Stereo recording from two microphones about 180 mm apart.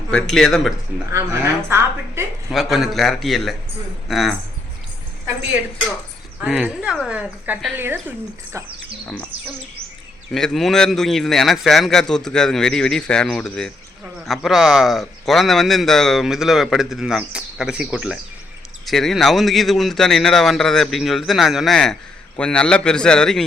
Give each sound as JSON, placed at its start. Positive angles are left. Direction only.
{"t": 0.1, "sound": "speech", "side_deg": 5}
{"t": 1.1, "sound": "a woman's voice", "side_deg": -15}
{"t": 2.5, "sound": "speech", "side_deg": 0}
{"t": 6.4, "sound": "a woman's voice", "side_deg": -5}
{"t": 10.3, "sound": "speech", "side_deg": 0}